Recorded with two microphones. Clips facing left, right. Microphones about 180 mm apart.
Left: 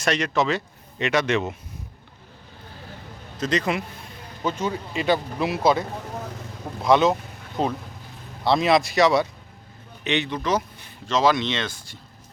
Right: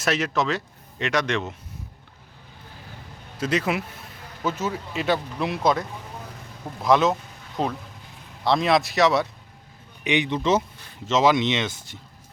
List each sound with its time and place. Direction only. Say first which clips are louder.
0.0 s speech: left 1 dB; 5° right (ahead or behind)
3.3 s a man's voice: even; 10° right (ahead or behind)
6.8 s speech: left 1 dB; centre (ahead or behind)
10.0 s speech: right 2 dB; 15° right (ahead or behind)